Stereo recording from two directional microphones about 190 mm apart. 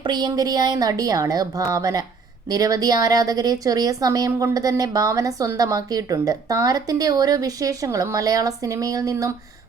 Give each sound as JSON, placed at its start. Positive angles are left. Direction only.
{"t": 0.0, "sound": "a woman's voice", "side_deg": -20}